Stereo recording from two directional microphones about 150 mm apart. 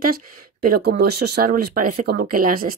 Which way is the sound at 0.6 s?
85° right.